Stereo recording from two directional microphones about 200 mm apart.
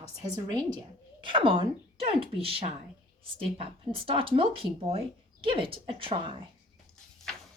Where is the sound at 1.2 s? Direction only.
25° right (ahead or behind).